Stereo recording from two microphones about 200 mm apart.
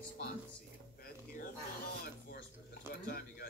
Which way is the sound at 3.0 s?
50° left (ahead or behind).